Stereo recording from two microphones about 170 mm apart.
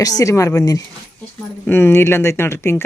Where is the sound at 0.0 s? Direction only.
20° left (ahead or behind).